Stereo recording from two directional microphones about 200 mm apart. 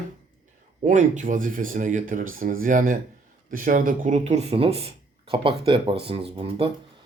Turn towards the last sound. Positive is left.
turn(degrees=-30)  # may be behind; listen again after turning